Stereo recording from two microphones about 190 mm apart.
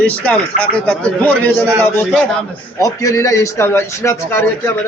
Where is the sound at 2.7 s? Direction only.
20° left (ahead or behind).